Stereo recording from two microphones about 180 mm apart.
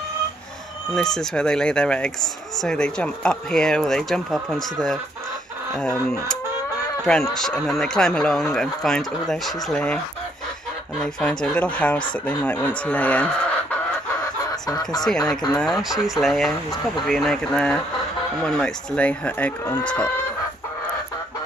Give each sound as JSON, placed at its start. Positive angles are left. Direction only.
{"t": 0.9, "sound": "speech", "side_deg": 5}
{"t": 7.3, "sound": "speech", "side_deg": 5}
{"t": 11.1, "sound": "speech", "side_deg": 5}
{"t": 14.5, "sound": "speech", "side_deg": 20}
{"t": 15.0, "sound": "speech", "side_deg": 5}